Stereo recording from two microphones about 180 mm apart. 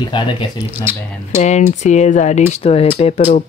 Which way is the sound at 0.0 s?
25° left (ahead or behind).